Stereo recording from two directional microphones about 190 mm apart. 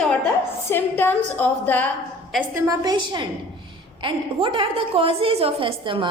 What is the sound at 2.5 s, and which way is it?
A woman's voice, 15° right (ahead or behind).